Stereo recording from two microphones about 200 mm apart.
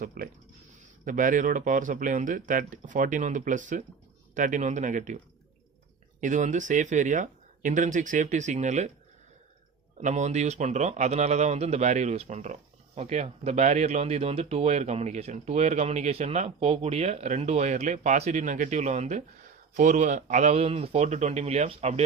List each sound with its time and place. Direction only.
0.0 s speech: 45° right (ahead or behind)
10.0 s speech: 35° right (ahead or behind)